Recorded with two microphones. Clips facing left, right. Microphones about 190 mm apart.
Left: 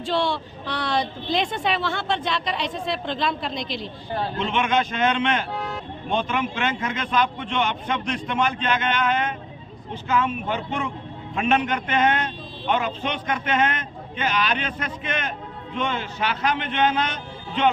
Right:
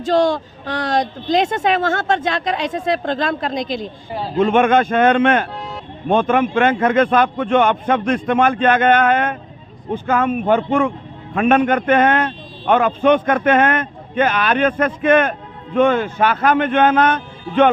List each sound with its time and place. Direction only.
0.0 s a man's voice: 45° right (ahead or behind)
4.1 s speech: 5° right (ahead or behind)
4.4 s a man's voice: 50° right (ahead or behind)